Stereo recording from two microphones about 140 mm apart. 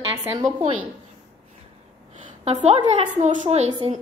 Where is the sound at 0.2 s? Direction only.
20° right (ahead or behind).